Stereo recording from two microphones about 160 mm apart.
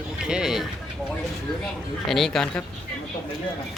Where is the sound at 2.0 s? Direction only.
Centre (ahead or behind).